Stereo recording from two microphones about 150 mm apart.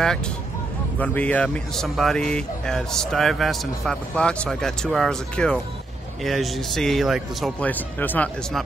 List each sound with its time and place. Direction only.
0.9 s speech: 10° left (ahead or behind)
7.6 s speech: 10° left (ahead or behind)